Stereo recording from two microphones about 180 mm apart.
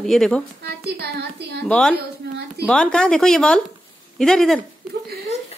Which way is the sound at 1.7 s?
5° left (ahead or behind).